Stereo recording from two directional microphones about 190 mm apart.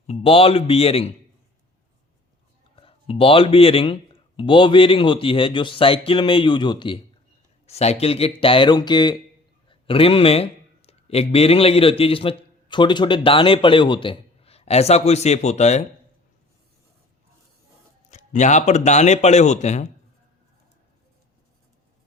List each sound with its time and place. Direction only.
0.1 s speech: 30° left (ahead or behind)
2.7 s a man's voice: 30° left (ahead or behind)
18.1 s speech: 40° left (ahead or behind)